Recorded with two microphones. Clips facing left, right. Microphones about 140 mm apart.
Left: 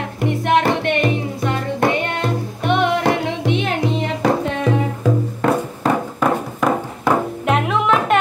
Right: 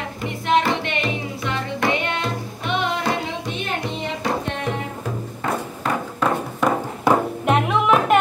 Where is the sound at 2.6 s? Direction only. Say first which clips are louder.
Left 6 dB; 55° left (ahead or behind); by 3.7 s 85° left.